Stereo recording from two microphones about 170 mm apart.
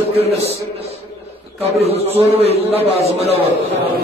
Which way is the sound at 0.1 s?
35° right (ahead or behind).